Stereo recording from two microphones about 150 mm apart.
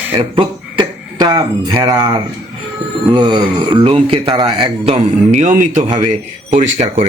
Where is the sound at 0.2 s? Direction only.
35° right (ahead or behind).